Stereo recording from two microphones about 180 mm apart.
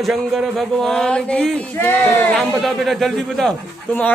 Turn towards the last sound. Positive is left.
turn(degrees=5)  # may be behind; listen again after turning